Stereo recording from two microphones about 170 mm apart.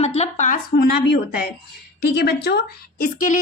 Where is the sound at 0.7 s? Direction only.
70° left (ahead or behind).